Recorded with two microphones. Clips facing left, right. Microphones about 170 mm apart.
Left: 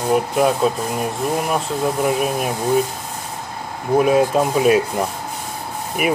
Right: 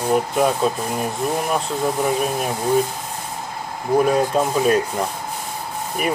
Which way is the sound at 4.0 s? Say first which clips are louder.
Left 2 dB; 5° left (ahead or behind).